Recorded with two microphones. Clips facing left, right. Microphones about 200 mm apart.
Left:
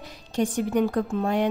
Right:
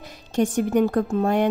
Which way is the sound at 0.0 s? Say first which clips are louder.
Right 3 dB; 45° right (ahead or behind).